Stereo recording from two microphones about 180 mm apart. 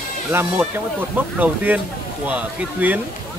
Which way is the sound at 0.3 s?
10° right (ahead or behind).